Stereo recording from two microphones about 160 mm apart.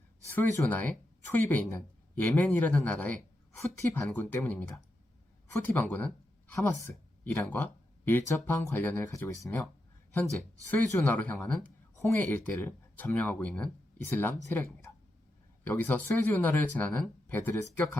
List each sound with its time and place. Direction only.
0.3 s speech: 10° left (ahead or behind)
10.9 s speech: 10° left (ahead or behind)